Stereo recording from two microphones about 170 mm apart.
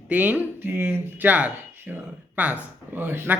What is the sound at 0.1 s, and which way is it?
Speech, 10° right (ahead or behind).